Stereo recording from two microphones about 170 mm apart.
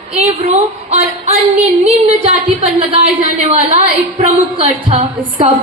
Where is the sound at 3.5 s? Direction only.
35° right (ahead or behind).